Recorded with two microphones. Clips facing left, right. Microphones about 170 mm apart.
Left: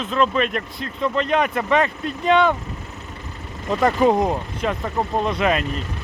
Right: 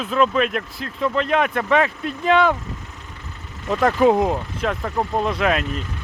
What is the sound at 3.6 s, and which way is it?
Speech, 5° right (ahead or behind).